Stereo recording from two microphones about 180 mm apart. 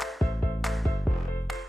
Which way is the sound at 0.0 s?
Centre (ahead or behind).